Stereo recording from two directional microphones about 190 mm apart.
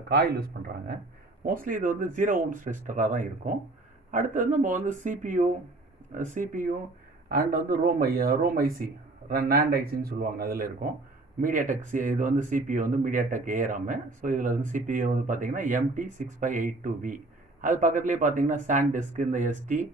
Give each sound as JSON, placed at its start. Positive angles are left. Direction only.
{"t": 0.1, "sound": "speech", "side_deg": -55}